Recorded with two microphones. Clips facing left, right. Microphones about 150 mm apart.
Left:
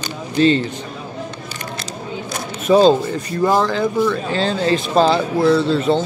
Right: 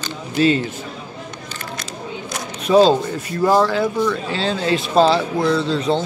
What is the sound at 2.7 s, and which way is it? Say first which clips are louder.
Speech: left 1 dB; centre (ahead or behind).